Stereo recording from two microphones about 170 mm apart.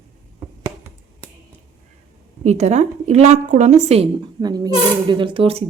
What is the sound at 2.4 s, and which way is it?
Speech, 40° right (ahead or behind).